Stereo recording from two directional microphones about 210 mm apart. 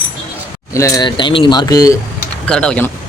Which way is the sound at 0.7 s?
15° left (ahead or behind).